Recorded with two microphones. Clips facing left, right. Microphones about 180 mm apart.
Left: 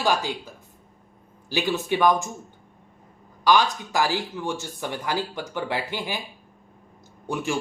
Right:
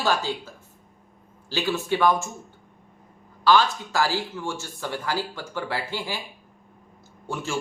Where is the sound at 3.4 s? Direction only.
15° left (ahead or behind).